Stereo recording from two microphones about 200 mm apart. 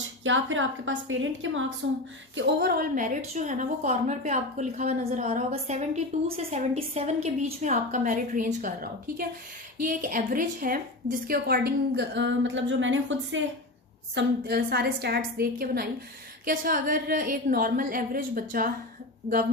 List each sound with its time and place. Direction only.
0.3 s a woman's voice: 75° right (ahead or behind)
14.2 s a woman's voice: 55° right (ahead or behind)